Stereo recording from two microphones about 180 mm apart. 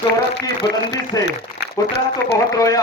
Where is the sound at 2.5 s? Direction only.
20° left (ahead or behind).